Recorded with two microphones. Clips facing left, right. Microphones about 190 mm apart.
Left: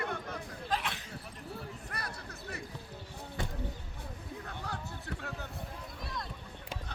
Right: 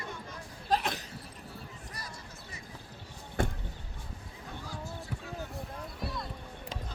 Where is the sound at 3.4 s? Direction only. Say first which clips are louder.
Right 8 dB; 50° right (ahead or behind).